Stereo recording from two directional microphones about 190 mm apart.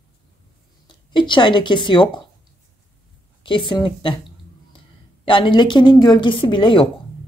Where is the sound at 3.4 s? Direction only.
25° left (ahead or behind).